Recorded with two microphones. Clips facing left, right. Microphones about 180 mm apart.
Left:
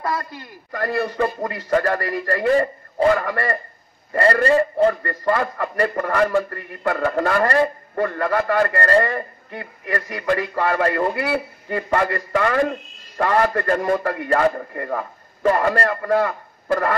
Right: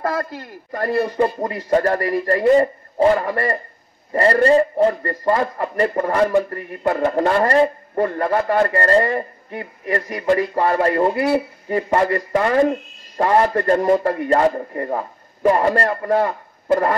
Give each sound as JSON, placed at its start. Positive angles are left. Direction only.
{"t": 0.0, "sound": "a man's voice", "side_deg": -45}
{"t": 1.1, "sound": "a man's voice", "side_deg": -20}